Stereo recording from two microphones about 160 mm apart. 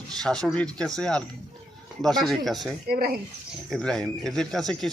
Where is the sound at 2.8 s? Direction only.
75° right (ahead or behind).